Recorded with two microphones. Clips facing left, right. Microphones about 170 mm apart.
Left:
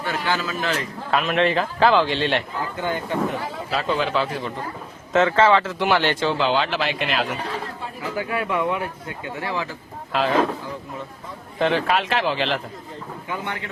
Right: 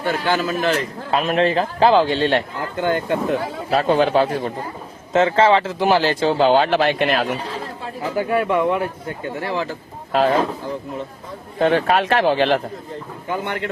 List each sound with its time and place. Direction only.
0.0 s speech: 50° right (ahead or behind)
2.8 s speech: 70° right (ahead or behind)
3.7 s speech: 50° right (ahead or behind)
5.1 s speech: 30° right (ahead or behind)
11.6 s speech: 45° right (ahead or behind)